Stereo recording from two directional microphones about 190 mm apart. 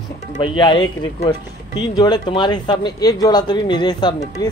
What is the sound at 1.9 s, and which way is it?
A man's voice, 20° left (ahead or behind).